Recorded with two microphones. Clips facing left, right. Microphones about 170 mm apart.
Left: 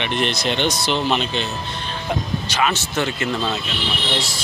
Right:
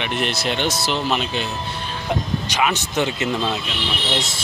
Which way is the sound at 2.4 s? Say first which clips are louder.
Left 1 dB; 15° right (ahead or behind).